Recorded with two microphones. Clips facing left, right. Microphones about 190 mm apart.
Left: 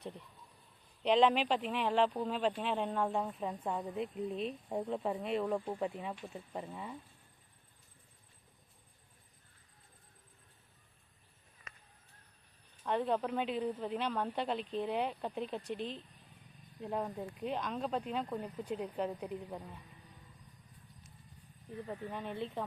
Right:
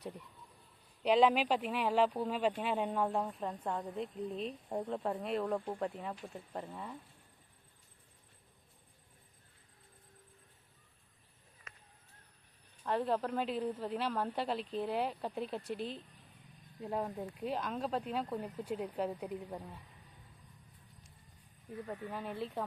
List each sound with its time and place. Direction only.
1.0 s speech: 5° right (ahead or behind)
12.8 s speech: centre (ahead or behind)
21.8 s speech: 5° right (ahead or behind)